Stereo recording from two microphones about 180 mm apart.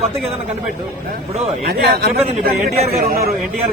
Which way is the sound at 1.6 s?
60° right (ahead or behind).